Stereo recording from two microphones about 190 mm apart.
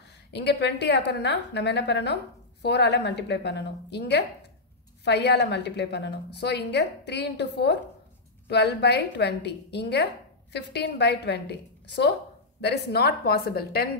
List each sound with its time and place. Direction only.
0.3 s a woman's voice: 60° left (ahead or behind)